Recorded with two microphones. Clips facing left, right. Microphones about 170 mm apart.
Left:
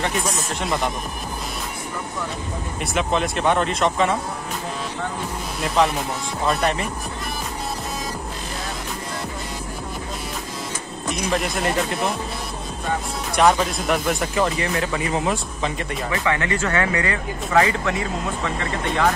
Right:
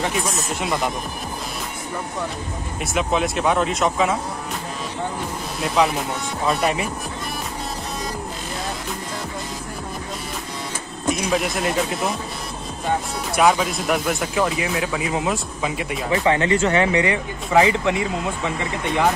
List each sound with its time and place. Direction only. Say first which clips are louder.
0.0 s speech: even; centre (ahead or behind)
2.8 s speech: right 1 dB; centre (ahead or behind)
5.8 s speech: even; centre (ahead or behind)
11.1 s speech: right 2 dB; centre (ahead or behind)
13.4 s speech: even; 5° right (ahead or behind)
16.1 s speech: right 5 dB; 25° right (ahead or behind)